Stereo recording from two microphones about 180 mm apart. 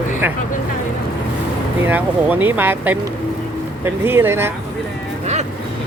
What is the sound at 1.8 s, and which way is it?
Speech, 10° right (ahead or behind).